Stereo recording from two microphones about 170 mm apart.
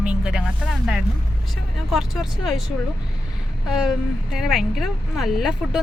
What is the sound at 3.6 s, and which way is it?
Speech, 5° right (ahead or behind).